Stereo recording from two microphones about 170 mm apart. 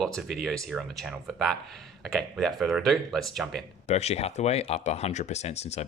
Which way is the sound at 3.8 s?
40° left (ahead or behind).